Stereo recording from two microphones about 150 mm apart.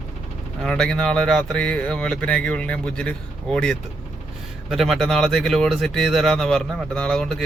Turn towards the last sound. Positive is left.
turn(degrees=5)  # may be behind; listen again after turning